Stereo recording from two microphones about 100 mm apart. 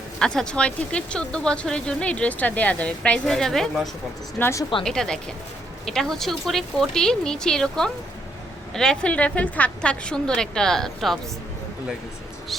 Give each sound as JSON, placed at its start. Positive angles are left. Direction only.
{"t": 0.2, "sound": "speech", "side_deg": 5}
{"t": 4.4, "sound": "a woman's voice", "side_deg": 25}
{"t": 4.8, "sound": "a woman's voice", "side_deg": 5}